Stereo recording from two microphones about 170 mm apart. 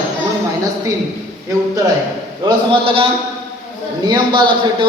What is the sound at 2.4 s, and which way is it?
A man's voice, 30° right (ahead or behind).